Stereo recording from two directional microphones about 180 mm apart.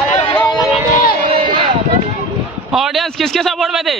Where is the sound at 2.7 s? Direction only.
Centre (ahead or behind).